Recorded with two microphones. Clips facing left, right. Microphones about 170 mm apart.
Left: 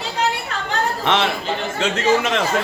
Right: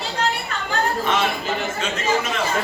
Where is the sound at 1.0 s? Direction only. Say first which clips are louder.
Left 2 dB; 80° left.